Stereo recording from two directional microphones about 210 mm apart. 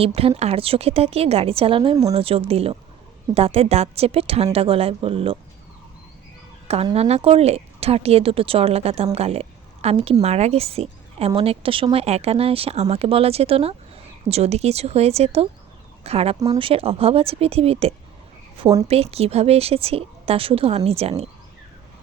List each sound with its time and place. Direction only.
0.0 s a woman's voice: 25° right (ahead or behind)
6.9 s a woman's voice: 30° right (ahead or behind)